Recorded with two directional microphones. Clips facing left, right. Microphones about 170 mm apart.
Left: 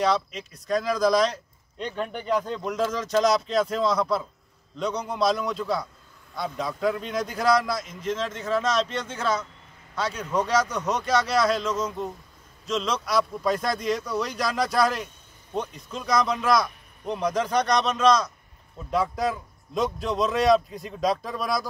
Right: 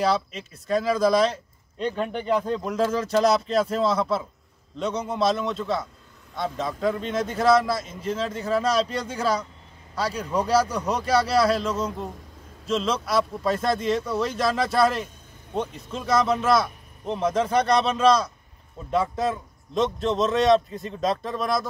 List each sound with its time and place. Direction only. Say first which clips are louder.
0.0 s a man's voice: right 1 dB; 5° right (ahead or behind)
9.9 s a man's voice: right 1 dB; 10° right (ahead or behind)
10.5 s speech: right 5 dB; 30° right (ahead or behind)
12.7 s speech: right 2 dB; 5° right (ahead or behind)